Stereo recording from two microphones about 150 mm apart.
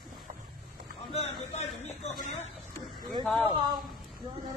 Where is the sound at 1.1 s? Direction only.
45° left (ahead or behind).